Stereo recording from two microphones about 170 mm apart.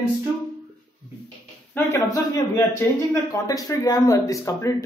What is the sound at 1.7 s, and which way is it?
A man's voice, 15° left (ahead or behind).